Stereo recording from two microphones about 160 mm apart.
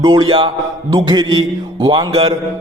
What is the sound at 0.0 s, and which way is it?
A man's voice, 30° right (ahead or behind).